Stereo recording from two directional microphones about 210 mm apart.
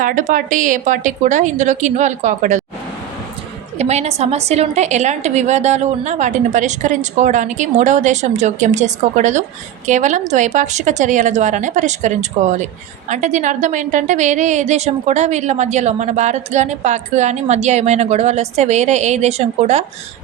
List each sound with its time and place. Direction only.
0.0 s a woman's voice: 40° right (ahead or behind)
3.8 s a woman's voice: 30° right (ahead or behind)